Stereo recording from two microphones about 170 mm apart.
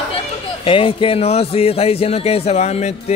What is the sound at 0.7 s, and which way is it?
A man's voice, 30° left (ahead or behind).